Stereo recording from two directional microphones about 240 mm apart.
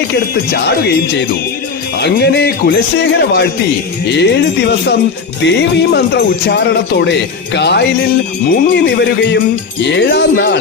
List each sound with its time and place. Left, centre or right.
0.5 s music: left
2.0 s speech: left